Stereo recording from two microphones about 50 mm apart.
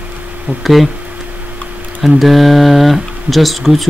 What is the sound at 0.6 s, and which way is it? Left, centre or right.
Speech, centre.